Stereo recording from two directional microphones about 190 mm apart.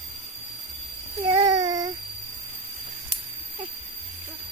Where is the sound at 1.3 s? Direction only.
20° right (ahead or behind).